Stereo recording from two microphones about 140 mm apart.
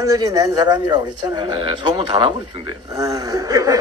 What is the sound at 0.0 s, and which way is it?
Speech, 25° right (ahead or behind).